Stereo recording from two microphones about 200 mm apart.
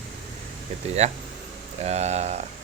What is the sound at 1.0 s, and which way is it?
Speech, 35° right (ahead or behind).